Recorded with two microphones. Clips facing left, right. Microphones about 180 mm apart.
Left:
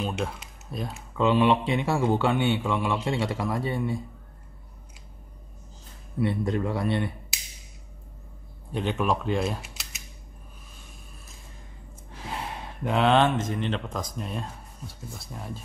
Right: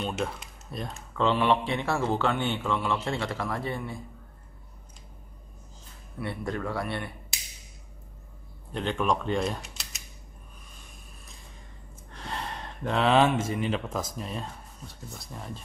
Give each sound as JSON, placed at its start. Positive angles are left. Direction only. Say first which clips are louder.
{"t": 0.0, "sound": "speech", "louder": "left 1 dB", "side_deg": 0}
{"t": 6.1, "sound": "speech", "louder": "left 7 dB", "side_deg": 20}
{"t": 8.7, "sound": "speech", "louder": "left 1 dB", "side_deg": 5}
{"t": 12.1, "sound": "speech", "louder": "left 1 dB", "side_deg": 5}